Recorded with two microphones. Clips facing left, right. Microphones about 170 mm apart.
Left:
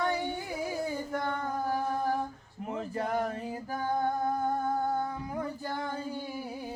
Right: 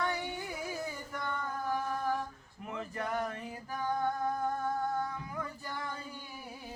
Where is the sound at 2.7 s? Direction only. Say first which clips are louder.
Left 4 dB; 30° left (ahead or behind).